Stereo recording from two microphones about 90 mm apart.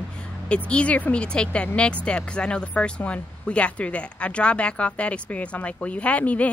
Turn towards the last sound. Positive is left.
turn(degrees=15)  # may be behind; listen again after turning